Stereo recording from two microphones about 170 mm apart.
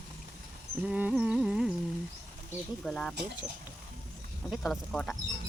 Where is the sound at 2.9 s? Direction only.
5° left (ahead or behind).